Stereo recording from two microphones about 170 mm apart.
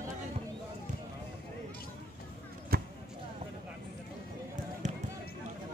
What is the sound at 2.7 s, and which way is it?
Basketball bounce, 60° right (ahead or behind).